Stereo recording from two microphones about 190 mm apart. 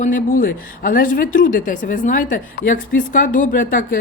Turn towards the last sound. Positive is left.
turn(degrees=45)  # may be behind; listen again after turning